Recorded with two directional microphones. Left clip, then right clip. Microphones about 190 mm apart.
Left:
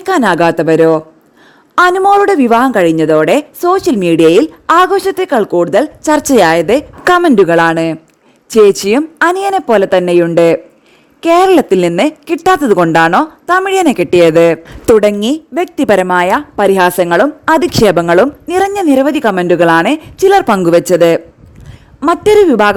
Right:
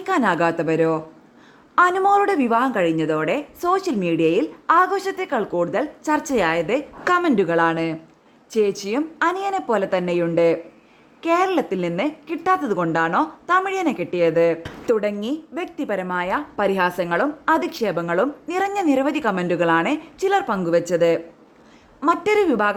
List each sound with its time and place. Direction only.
0.0 s a woman's voice: 50° left (ahead or behind)
13.1 s a woman's voice: 40° left (ahead or behind)
13.7 s a woman's voice: 60° left (ahead or behind)